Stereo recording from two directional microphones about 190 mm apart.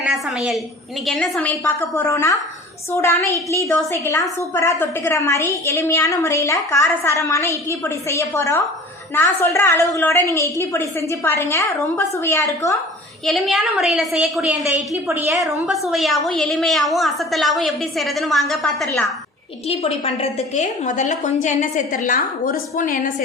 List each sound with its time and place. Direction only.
0.0 s a woman's voice: 5° right (ahead or behind); by 12.7 s 15° left (ahead or behind)
13.2 s a woman's voice: centre (ahead or behind)
19.6 s a woman's voice: 30° left (ahead or behind)